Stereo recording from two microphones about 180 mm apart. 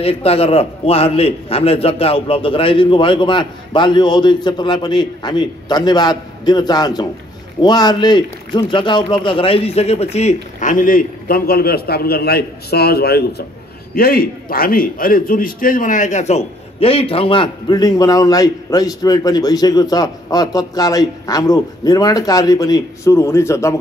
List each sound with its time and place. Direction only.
0.0 s a man's voice: 35° left (ahead or behind); by 23.7 s 15° left (ahead or behind)